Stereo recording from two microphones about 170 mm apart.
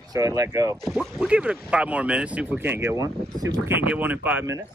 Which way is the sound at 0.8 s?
5° right (ahead or behind).